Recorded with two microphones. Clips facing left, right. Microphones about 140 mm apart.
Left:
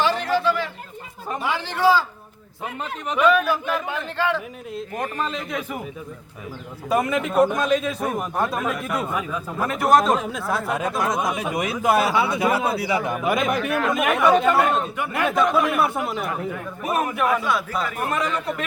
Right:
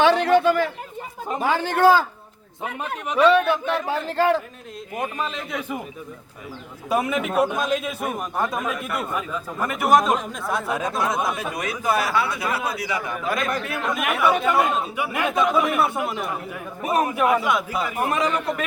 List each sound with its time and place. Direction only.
0.0 s a sound: 65° right (ahead or behind)
1.4 s a man's voice: 45° right (ahead or behind)
3.2 s a man's voice: 30° right (ahead or behind)
4.9 s a man's voice: 10° right (ahead or behind)
6.9 s a man's voice: 10° right (ahead or behind)
11.2 s a man's voice: 15° left (ahead or behind); by 12.9 s 30° left (ahead or behind)
12.9 s a man's voice: 15° left (ahead or behind)
13.6 s speech: 90° left
13.9 s a man's voice: centre (ahead or behind)
16.8 s a man's voice: 25° right (ahead or behind); by 18.6 s 10° right (ahead or behind)